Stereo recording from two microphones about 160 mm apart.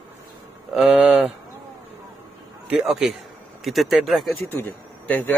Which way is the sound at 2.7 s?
5° right (ahead or behind).